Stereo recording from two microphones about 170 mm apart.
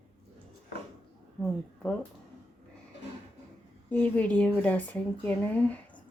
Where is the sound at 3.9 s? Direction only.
10° left (ahead or behind).